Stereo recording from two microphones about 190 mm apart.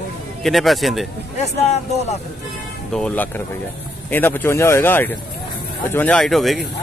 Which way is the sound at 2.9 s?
10° left (ahead or behind).